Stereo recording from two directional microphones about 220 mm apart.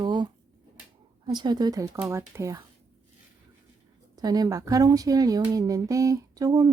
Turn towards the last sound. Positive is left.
turn(degrees=-15)  # may be behind; listen again after turning